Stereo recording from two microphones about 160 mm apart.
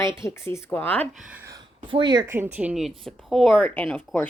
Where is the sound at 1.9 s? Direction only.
30° right (ahead or behind).